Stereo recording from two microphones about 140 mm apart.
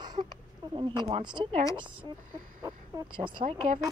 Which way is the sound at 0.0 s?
30° right (ahead or behind).